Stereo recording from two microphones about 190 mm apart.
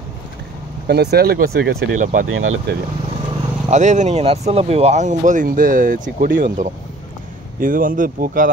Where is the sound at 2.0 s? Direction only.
40° right (ahead or behind).